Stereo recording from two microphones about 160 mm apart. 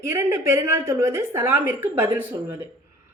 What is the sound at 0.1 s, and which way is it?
A woman's voice, 20° right (ahead or behind).